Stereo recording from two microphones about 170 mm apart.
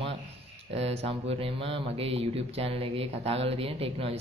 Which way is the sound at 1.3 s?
35° right (ahead or behind).